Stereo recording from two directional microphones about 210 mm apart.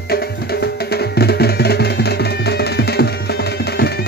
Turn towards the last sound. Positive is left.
turn(degrees=50)  # may be behind; listen again after turning